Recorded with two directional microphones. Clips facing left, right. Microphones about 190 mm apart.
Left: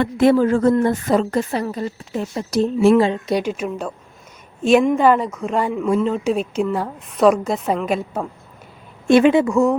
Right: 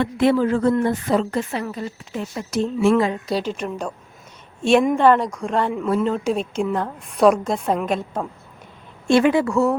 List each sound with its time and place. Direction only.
0.0 s a woman's voice: 45° left (ahead or behind)
2.9 s speech: 25° left (ahead or behind)
3.4 s a woman's voice: 5° left (ahead or behind)
9.0 s speech: 20° left (ahead or behind)